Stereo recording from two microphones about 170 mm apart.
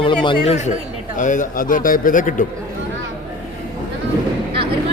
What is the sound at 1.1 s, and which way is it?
A man's voice, 50° left (ahead or behind).